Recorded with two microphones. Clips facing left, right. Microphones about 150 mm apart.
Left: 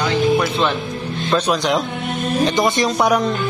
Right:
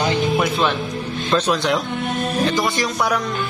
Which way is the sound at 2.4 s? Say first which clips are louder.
Left 5 dB; 20° left (ahead or behind).